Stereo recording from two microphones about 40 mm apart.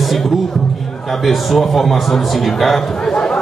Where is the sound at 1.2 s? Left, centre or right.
Centre.